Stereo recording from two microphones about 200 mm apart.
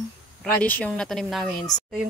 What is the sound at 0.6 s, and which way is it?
Speech, 5° left (ahead or behind).